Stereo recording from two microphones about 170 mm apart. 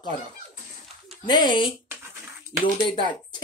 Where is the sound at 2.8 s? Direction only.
30° left (ahead or behind).